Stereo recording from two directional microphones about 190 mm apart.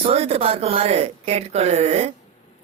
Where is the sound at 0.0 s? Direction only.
30° right (ahead or behind).